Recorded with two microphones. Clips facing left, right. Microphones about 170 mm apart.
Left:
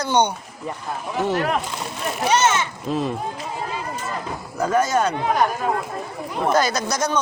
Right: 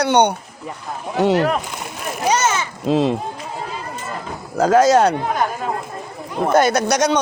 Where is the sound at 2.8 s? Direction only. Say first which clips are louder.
Right 10 dB; 90° right.